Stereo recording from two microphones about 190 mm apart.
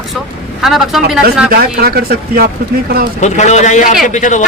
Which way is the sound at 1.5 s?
55° right (ahead or behind).